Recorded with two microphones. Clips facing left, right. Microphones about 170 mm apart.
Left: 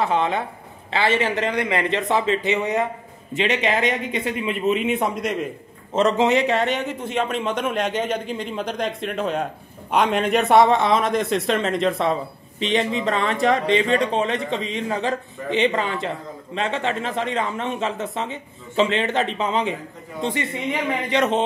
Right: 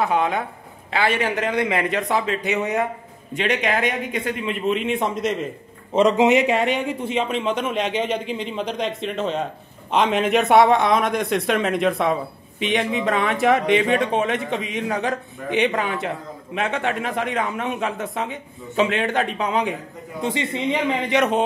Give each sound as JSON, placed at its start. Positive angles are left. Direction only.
{"t": 0.0, "sound": "a man's voice", "side_deg": 0}
{"t": 5.9, "sound": "a man's voice", "side_deg": -15}
{"t": 20.2, "sound": "a man's voice", "side_deg": -20}